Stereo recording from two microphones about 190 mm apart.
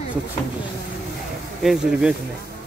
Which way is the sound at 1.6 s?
5° right (ahead or behind).